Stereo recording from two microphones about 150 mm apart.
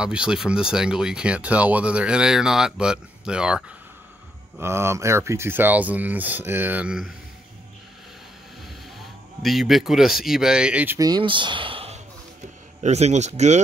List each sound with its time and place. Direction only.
0.0 s speech: 5° right (ahead or behind)
4.6 s speech: 15° right (ahead or behind)
9.4 s speech: centre (ahead or behind)
11.0 s a man's voice: 30° right (ahead or behind); by 13.6 s 50° right (ahead or behind)